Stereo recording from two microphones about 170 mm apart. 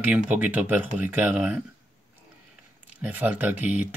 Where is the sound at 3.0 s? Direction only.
10° right (ahead or behind).